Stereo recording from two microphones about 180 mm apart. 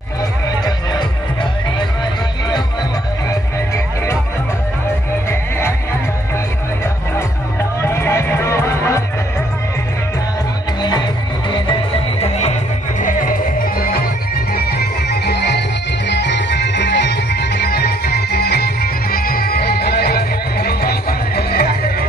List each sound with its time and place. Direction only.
0.7 s music: 25° left (ahead or behind)
3.3 s music: 15° left (ahead or behind)
5.3 s music: 15° left (ahead or behind)
7.8 s music: 15° left (ahead or behind)
10.8 s music: 25° left (ahead or behind)
12.2 s music: 35° left (ahead or behind)
13.0 s music: 50° left (ahead or behind); by 15.6 s 65° left (ahead or behind)
16.1 s music: 80° left; by 22.0 s 60° left (ahead or behind)